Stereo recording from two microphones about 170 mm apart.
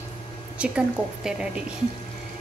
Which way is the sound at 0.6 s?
5° right (ahead or behind).